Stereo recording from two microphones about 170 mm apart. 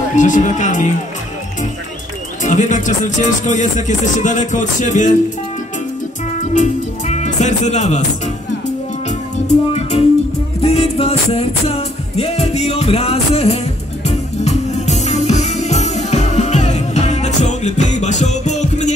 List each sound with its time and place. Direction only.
0.1 s speech: 50° left (ahead or behind)
2.4 s speech: 45° left (ahead or behind)
6.5 s speech: 45° left (ahead or behind)
9.8 s music: 40° left (ahead or behind)